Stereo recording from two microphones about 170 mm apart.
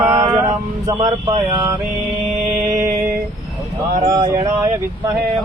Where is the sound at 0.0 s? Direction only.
15° right (ahead or behind).